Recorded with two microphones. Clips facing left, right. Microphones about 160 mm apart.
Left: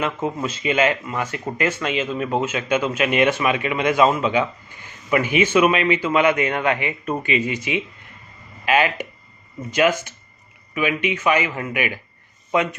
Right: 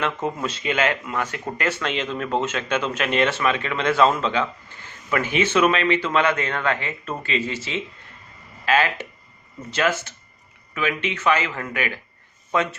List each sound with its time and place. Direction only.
0.0 s speech: 5° left (ahead or behind)